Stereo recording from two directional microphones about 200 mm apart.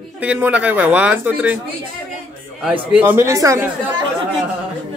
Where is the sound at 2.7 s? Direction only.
5° right (ahead or behind).